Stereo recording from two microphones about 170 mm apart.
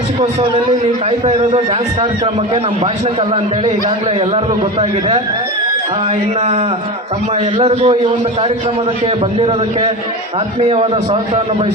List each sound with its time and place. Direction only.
1.2 s a man's voice: 35° right (ahead or behind)
4.8 s a man's voice: 35° right (ahead or behind)
7.6 s a man's voice: 35° right (ahead or behind)
10.7 s a man's voice: 35° right (ahead or behind)